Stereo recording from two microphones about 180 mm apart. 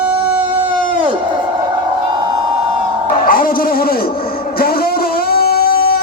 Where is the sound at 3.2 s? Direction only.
50° left (ahead or behind).